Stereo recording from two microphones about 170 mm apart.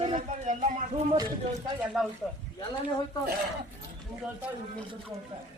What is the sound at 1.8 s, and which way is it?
Speech, centre (ahead or behind).